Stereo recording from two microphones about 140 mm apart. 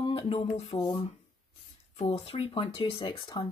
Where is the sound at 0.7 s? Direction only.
30° left (ahead or behind).